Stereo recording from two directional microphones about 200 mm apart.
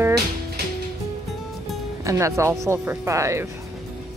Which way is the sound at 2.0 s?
15° right (ahead or behind).